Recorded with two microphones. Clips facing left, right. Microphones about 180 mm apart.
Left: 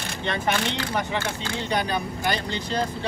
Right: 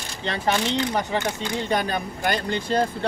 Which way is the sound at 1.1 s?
15° right (ahead or behind).